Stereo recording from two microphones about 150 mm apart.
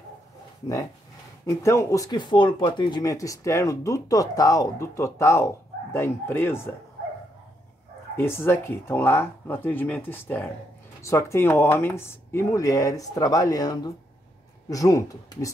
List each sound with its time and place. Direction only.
1.4 s speech: 20° left (ahead or behind)
8.2 s speech: 15° left (ahead or behind)